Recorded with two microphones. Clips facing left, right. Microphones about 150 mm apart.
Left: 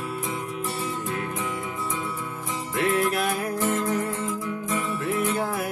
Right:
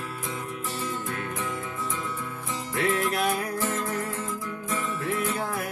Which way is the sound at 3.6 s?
20° left (ahead or behind).